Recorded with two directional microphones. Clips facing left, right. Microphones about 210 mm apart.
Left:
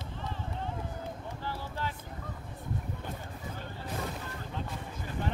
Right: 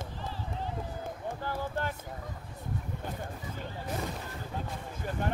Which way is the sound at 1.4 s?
50° right (ahead or behind).